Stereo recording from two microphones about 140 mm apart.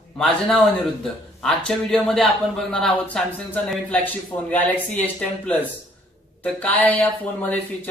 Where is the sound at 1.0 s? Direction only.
5° left (ahead or behind).